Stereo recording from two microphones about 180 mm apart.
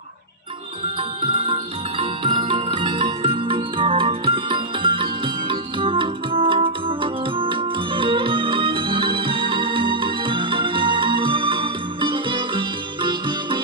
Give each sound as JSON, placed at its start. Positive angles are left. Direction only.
{"t": 1.2, "sound": "jingle bell", "side_deg": -30}
{"t": 2.0, "sound": "music", "side_deg": -30}